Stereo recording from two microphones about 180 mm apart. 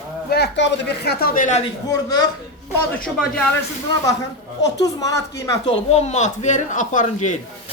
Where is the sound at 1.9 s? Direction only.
20° left (ahead or behind).